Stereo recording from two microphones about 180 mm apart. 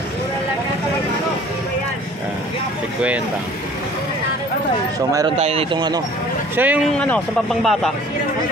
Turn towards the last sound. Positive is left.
turn(degrees=5)  # may be behind; listen again after turning